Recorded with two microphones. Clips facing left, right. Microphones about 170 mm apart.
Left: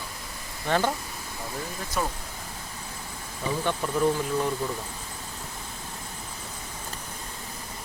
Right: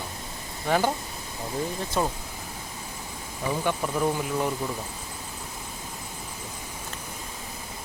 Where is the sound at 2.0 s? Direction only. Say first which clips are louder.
Right 3 dB; 25° right (ahead or behind).